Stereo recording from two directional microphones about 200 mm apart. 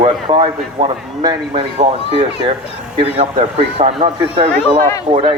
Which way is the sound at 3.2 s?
35° right (ahead or behind).